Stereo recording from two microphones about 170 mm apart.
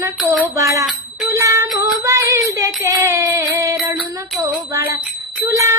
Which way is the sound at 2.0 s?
20° right (ahead or behind).